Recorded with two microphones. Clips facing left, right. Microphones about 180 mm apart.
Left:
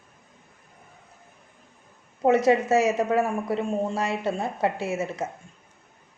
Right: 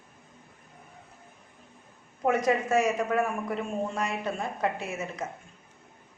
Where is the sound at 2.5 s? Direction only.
25° left (ahead or behind).